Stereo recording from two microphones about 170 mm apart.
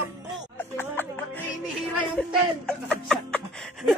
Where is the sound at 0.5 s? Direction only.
10° left (ahead or behind).